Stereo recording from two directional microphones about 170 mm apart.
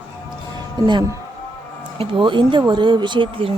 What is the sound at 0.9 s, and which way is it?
A woman's voice, 25° right (ahead or behind).